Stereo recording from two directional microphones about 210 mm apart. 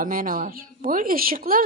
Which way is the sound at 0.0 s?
40° right (ahead or behind).